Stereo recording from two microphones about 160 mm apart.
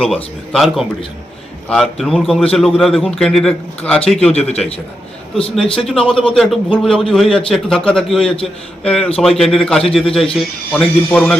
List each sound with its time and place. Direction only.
0.0 s a man's voice: centre (ahead or behind)
4.4 s a man's voice: 40° left (ahead or behind)
5.7 s a man's voice: 5° left (ahead or behind)